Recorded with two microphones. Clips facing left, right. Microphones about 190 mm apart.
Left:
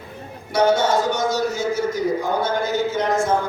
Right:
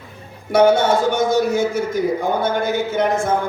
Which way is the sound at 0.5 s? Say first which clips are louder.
Right 4 dB; 55° right (ahead or behind).